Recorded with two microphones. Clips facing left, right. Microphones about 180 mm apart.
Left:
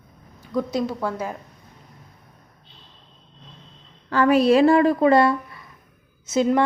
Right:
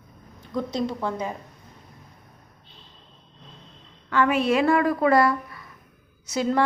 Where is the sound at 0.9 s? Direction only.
5° left (ahead or behind).